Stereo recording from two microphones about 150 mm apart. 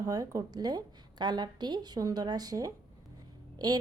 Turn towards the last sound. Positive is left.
turn(degrees=-25)  # may be behind; listen again after turning